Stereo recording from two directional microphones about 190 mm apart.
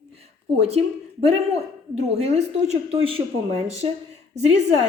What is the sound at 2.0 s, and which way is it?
A woman's voice, 35° right (ahead or behind).